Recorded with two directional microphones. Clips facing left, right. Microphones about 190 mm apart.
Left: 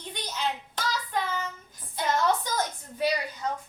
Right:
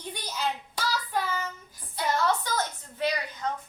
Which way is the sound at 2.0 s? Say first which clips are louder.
Left 1 dB; 15° left (ahead or behind).